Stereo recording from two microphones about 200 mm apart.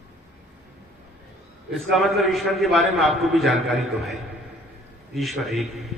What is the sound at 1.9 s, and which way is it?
A man's voice, centre (ahead or behind).